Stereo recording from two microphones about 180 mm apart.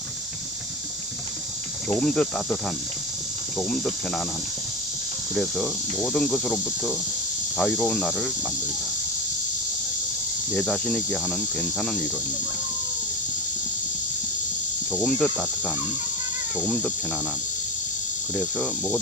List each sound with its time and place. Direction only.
1.9 s speech: 5° left (ahead or behind)
3.6 s speech: 5° left (ahead or behind)
5.3 s speech: 5° left (ahead or behind)
10.5 s speech: 5° left (ahead or behind)
14.9 s speech: 5° left (ahead or behind)
18.3 s speech: 5° left (ahead or behind)